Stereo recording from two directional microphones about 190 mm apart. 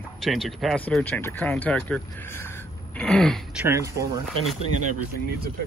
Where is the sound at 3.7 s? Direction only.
15° right (ahead or behind).